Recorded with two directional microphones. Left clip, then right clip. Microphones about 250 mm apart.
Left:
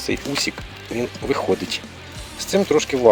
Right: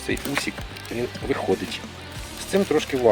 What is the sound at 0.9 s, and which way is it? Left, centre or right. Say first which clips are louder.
Speech: left 4 dB; left.